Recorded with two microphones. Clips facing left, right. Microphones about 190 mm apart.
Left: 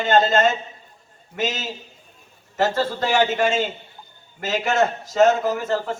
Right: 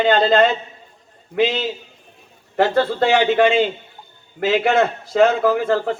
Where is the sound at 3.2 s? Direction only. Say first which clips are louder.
Right 5 dB; 45° left (ahead or behind).